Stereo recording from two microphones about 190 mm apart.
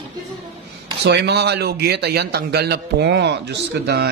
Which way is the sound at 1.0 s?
65° right (ahead or behind).